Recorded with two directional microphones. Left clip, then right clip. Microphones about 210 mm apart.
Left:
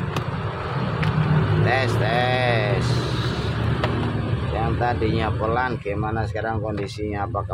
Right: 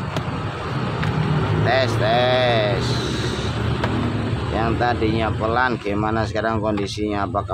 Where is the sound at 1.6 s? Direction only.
15° right (ahead or behind).